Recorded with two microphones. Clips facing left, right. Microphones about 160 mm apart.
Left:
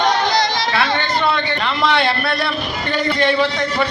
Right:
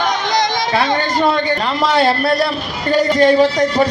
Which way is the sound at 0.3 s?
20° right (ahead or behind).